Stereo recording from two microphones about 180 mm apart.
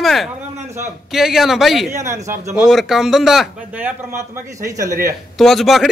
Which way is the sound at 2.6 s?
Centre (ahead or behind).